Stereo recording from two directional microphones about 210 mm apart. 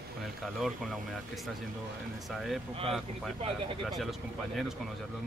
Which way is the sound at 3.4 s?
25° right (ahead or behind).